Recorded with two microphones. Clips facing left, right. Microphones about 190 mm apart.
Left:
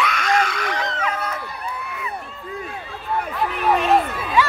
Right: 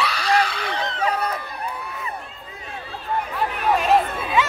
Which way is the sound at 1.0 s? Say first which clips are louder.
Right 2 dB; 35° right (ahead or behind).